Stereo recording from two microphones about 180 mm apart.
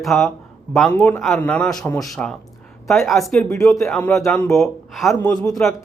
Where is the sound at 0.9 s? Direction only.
15° left (ahead or behind).